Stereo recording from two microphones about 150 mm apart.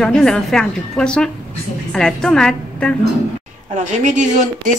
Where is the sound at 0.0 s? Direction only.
5° left (ahead or behind).